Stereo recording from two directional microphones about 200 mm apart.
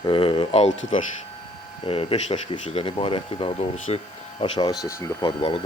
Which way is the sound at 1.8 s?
30° left (ahead or behind).